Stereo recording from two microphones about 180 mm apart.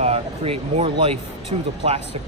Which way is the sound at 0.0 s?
35° right (ahead or behind).